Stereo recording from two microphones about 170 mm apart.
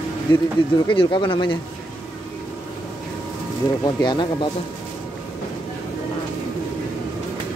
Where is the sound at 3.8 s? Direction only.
25° left (ahead or behind).